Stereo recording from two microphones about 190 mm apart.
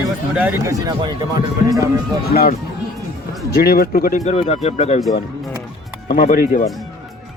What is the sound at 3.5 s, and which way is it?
Speech, 55° left (ahead or behind).